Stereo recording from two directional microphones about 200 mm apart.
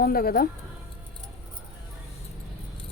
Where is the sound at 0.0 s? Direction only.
50° left (ahead or behind).